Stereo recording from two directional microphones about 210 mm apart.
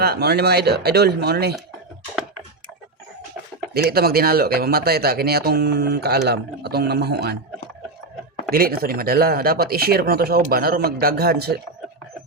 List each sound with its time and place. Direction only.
0.0 s speech: 50° right (ahead or behind)
3.8 s speech: 45° right (ahead or behind)
8.5 s speech: 45° right (ahead or behind)